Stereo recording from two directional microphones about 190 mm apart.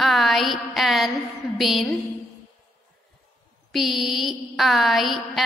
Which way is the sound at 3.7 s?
Centre (ahead or behind).